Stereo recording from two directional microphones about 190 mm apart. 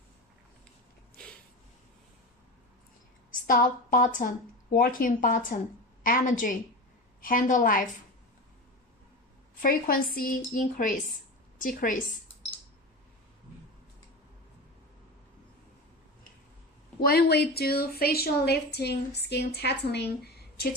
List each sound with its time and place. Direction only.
1.2 s a sound: 5° left (ahead or behind)
3.4 s a woman's voice: 45° left (ahead or behind)
9.6 s speech: 50° left (ahead or behind)
17.0 s a woman's voice: 55° left (ahead or behind)